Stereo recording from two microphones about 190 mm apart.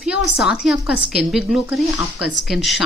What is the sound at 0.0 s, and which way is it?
Speech, centre (ahead or behind).